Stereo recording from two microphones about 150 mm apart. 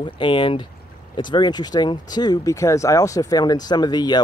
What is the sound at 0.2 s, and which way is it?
Speech, 35° left (ahead or behind).